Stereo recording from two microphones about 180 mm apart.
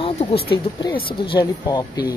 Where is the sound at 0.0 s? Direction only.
30° left (ahead or behind).